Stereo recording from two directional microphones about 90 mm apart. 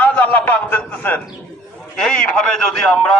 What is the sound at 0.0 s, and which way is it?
A man's voice, 20° left (ahead or behind).